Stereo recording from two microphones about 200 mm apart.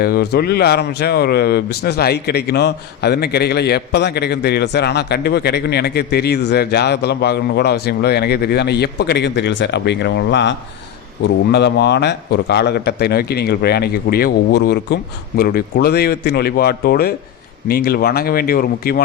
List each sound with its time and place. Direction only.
0.0 s a man's voice: 50° left (ahead or behind)